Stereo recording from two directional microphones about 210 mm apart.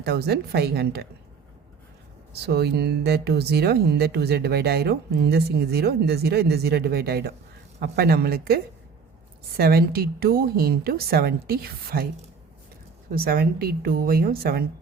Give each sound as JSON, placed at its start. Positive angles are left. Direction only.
{"t": 0.0, "sound": "speech", "side_deg": -50}
{"t": 2.4, "sound": "speech", "side_deg": -50}
{"t": 13.1, "sound": "speech", "side_deg": -45}